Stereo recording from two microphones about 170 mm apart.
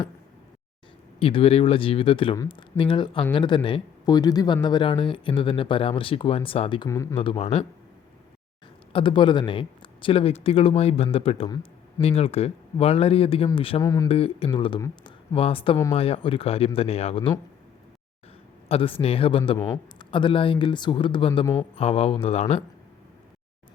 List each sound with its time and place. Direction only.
1.2 s speech: 35° left (ahead or behind)
6.8 s speech: 15° left (ahead or behind)
7.2 s speech: 35° left (ahead or behind)
8.9 s speech: 30° left (ahead or behind)
13.8 s speech: 20° left (ahead or behind)
14.1 s speech: 35° left (ahead or behind)
14.8 s speech: 20° left (ahead or behind)
15.4 s speech: 35° left (ahead or behind)
18.7 s speech: 30° left (ahead or behind)